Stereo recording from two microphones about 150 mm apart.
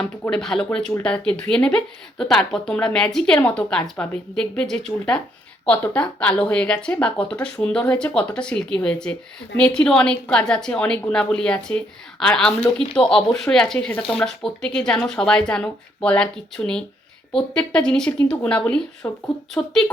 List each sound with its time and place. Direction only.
0.0 s speech: 5° left (ahead or behind)
19.6 s speech: 20° left (ahead or behind)